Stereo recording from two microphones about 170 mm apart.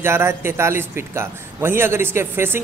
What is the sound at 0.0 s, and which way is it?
A man's voice, 15° right (ahead or behind).